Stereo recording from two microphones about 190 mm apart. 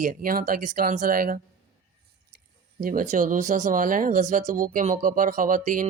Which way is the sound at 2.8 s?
45° right (ahead or behind).